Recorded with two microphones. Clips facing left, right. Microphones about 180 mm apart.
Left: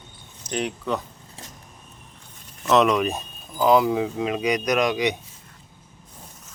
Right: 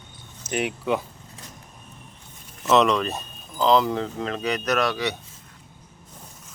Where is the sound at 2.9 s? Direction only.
10° left (ahead or behind).